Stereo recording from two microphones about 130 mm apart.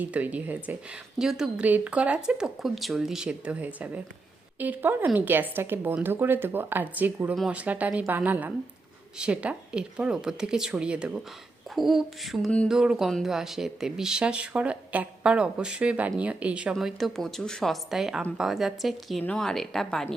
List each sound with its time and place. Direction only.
0.0 s speech: 10° right (ahead or behind)